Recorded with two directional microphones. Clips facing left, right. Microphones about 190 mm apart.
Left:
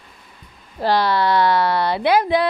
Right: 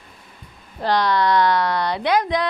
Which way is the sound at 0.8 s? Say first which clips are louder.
Left 1 dB; 5° left (ahead or behind).